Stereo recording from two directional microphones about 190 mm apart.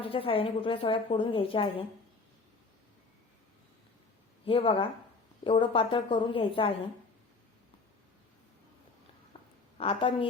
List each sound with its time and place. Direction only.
0.0 s a woman's voice: 30° left (ahead or behind)
4.4 s a woman's voice: 30° left (ahead or behind)
9.3 s a sound: 25° left (ahead or behind)
9.7 s a woman's voice: 30° left (ahead or behind)